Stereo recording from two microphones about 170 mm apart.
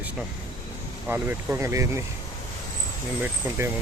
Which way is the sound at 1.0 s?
10° right (ahead or behind).